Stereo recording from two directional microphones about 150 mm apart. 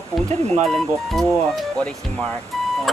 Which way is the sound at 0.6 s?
Centre (ahead or behind).